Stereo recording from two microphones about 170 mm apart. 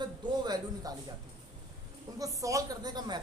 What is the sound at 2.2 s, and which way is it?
Speech, 20° right (ahead or behind).